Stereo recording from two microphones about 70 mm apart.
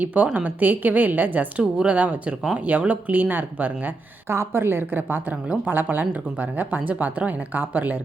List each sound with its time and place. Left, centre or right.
0.0 s speech: right